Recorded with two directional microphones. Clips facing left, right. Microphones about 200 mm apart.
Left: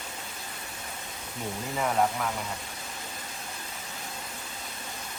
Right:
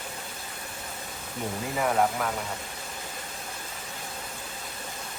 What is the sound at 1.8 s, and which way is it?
Speech, centre (ahead or behind).